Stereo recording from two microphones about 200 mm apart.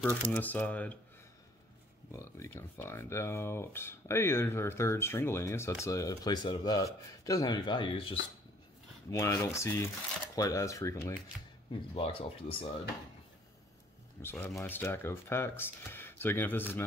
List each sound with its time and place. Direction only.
0.0 s speech: 10° left (ahead or behind)
2.1 s speech: 15° left (ahead or behind)
9.1 s speech: 15° left (ahead or behind)
11.9 s speech: 25° left (ahead or behind)
14.2 s speech: 10° left (ahead or behind)